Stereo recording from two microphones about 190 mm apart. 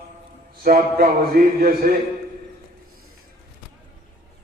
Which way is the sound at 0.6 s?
50° right (ahead or behind).